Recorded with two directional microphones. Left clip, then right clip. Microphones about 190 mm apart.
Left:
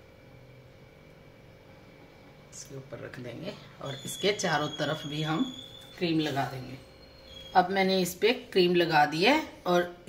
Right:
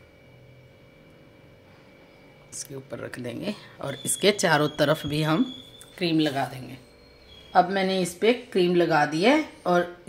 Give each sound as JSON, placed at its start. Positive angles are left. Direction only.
{"t": 2.5, "sound": "speech", "side_deg": -65}
{"t": 7.5, "sound": "speech", "side_deg": -55}